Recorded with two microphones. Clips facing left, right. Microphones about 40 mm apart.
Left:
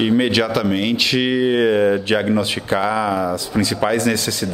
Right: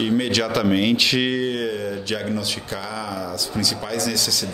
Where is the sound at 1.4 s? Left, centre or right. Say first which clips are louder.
Left 9 dB; left.